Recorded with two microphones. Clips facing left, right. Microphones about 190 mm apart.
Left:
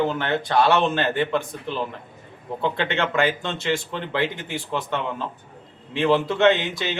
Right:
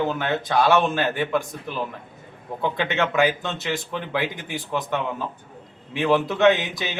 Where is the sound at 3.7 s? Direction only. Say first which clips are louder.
Left 2 dB; 10° right (ahead or behind).